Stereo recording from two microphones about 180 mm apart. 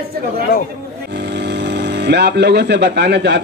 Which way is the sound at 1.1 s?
70° right (ahead or behind).